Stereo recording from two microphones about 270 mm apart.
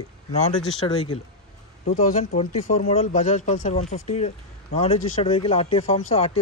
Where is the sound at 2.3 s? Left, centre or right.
Left.